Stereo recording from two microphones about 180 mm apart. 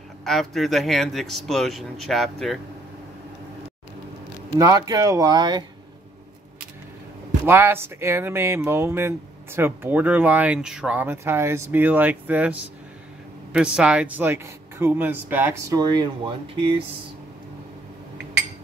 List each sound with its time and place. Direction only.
0.2 s speech: centre (ahead or behind)
4.6 s speech: 20° right (ahead or behind)
7.4 s speech: 10° right (ahead or behind); by 16.8 s 30° right (ahead or behind)